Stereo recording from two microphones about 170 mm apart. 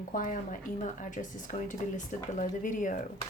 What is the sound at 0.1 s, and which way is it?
Speech, 50° left (ahead or behind).